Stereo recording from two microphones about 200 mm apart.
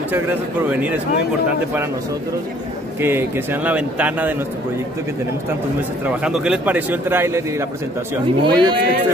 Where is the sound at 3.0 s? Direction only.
10° right (ahead or behind).